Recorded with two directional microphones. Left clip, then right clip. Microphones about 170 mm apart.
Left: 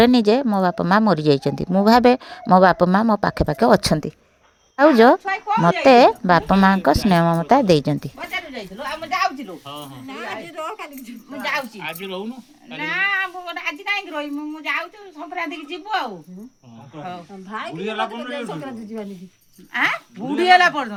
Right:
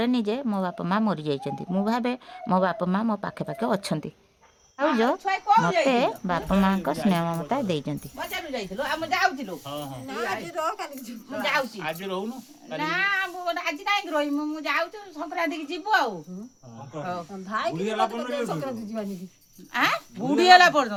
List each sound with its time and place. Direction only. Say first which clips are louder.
0.0 s a woman's voice: left 11 dB; 45° left (ahead or behind)
9.6 s speech: even; 35° right (ahead or behind)
10.1 s a woman's voice: right 1 dB; 20° right (ahead or behind)
11.3 s speech: left 1 dB; 5° left (ahead or behind)
11.8 s a woman's voice: left 1 dB; 25° right (ahead or behind)
12.8 s a man's voice: left 4 dB; 10° right (ahead or behind)